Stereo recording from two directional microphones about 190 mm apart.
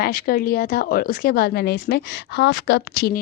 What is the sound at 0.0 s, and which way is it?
Speech, 50° left (ahead or behind).